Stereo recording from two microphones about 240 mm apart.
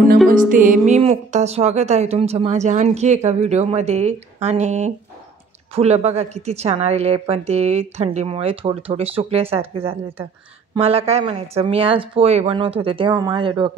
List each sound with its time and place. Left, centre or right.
0.3 s a woman's voice: right